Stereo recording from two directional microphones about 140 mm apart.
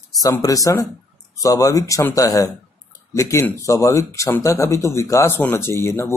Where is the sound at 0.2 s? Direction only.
25° left (ahead or behind).